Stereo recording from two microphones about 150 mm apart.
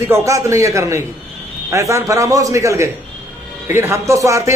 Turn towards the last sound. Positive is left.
turn(degrees=-20)  # may be behind; listen again after turning